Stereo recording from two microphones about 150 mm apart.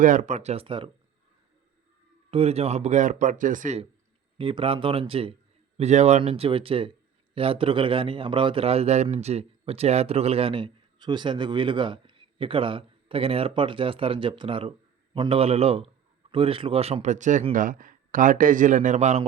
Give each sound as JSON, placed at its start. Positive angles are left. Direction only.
{"t": 0.0, "sound": "speech", "side_deg": -55}
{"t": 2.3, "sound": "a man's voice", "side_deg": -45}
{"t": 4.4, "sound": "a man's voice", "side_deg": -35}